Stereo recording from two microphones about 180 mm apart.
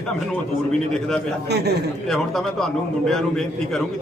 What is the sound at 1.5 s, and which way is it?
Speech, 65° right (ahead or behind).